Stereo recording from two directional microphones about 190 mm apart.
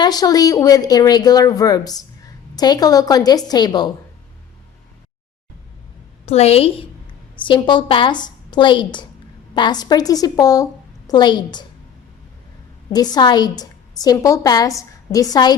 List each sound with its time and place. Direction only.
0.0 s a woman's voice: 20° left (ahead or behind)
6.2 s a woman's voice: 35° left (ahead or behind)
12.9 s a woman's voice: 20° left (ahead or behind)